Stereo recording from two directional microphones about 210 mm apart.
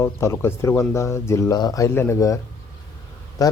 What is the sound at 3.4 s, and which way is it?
Speech, 15° left (ahead or behind).